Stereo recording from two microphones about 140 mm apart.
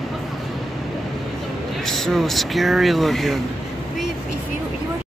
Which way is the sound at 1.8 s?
Centre (ahead or behind).